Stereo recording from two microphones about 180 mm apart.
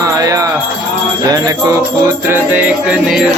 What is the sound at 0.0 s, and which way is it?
Music, 20° right (ahead or behind).